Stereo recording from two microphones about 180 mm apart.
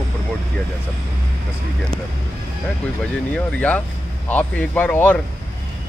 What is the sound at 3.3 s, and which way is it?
Speech, 5° left (ahead or behind).